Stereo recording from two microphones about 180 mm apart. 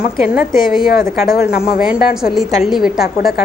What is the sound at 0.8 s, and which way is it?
Speech, 55° left (ahead or behind).